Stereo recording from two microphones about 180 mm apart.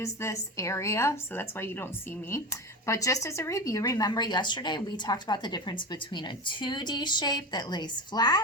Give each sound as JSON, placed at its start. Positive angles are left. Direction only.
{"t": 0.0, "sound": "speech", "side_deg": 15}